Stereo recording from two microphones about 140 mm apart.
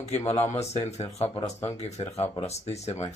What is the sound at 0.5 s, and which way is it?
Speech, 50° left (ahead or behind).